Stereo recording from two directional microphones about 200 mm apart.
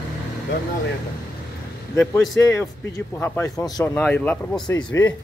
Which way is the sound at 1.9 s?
10° left (ahead or behind).